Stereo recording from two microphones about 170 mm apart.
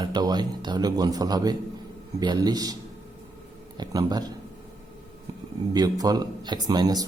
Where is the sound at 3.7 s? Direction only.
25° right (ahead or behind).